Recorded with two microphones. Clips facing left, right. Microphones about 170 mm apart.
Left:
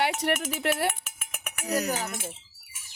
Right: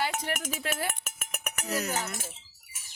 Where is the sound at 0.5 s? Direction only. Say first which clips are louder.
Left 6 dB; 70° left (ahead or behind).